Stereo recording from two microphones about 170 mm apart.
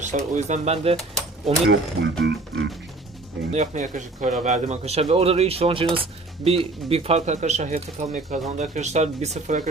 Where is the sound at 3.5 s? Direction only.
45° right (ahead or behind).